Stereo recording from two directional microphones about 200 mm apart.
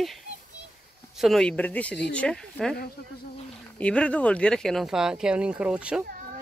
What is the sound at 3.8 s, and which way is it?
Speech, 5° left (ahead or behind).